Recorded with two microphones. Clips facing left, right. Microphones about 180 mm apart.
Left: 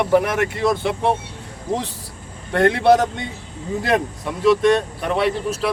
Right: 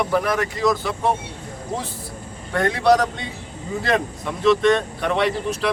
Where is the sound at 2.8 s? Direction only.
25° left (ahead or behind).